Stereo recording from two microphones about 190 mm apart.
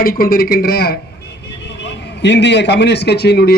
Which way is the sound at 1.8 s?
65° left (ahead or behind).